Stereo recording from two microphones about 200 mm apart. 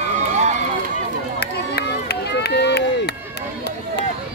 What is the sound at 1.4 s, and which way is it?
Run, 55° left (ahead or behind).